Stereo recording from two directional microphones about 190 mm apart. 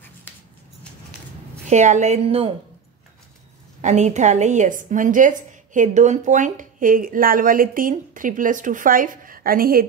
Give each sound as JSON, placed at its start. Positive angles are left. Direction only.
{"t": 1.7, "sound": "a woman's voice", "side_deg": -40}
{"t": 3.8, "sound": "a woman's voice", "side_deg": -40}